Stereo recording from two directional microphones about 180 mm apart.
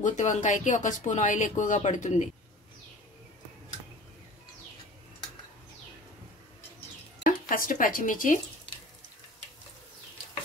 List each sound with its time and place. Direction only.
0.0 s speech: 45° left (ahead or behind)
7.2 s speech: 50° left (ahead or behind)